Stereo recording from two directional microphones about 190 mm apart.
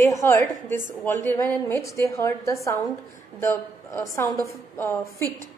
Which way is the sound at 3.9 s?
15° left (ahead or behind).